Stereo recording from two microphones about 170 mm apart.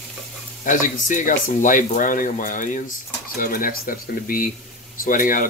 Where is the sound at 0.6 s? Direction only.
50° left (ahead or behind).